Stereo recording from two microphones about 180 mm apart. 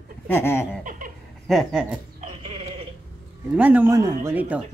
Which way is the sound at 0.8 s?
50° right (ahead or behind).